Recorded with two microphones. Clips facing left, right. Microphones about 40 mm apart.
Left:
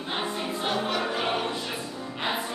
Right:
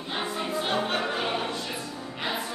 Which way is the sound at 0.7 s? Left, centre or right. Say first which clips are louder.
Left 1 dB; right.